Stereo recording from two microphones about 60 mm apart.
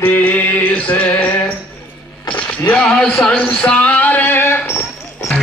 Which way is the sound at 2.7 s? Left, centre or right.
Centre.